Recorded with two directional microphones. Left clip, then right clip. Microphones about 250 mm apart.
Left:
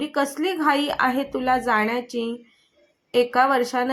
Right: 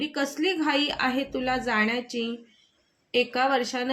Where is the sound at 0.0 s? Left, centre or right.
Centre.